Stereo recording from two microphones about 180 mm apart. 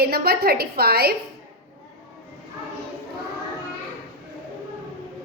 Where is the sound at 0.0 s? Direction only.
60° right (ahead or behind).